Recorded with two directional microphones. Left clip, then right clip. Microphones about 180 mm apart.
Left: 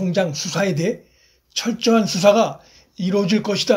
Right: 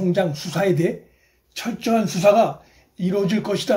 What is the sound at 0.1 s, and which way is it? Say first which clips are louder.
Speech: left 3 dB; 35° left (ahead or behind).